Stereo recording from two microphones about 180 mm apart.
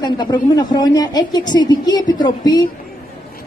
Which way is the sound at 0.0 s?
20° left (ahead or behind).